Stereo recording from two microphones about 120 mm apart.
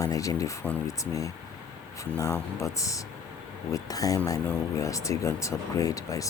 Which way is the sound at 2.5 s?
25° left (ahead or behind).